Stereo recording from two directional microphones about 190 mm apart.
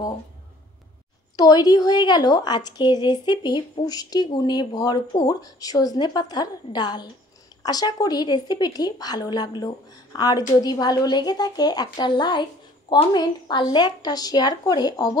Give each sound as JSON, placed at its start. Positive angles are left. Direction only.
{"t": 1.3, "sound": "a woman's voice", "side_deg": 20}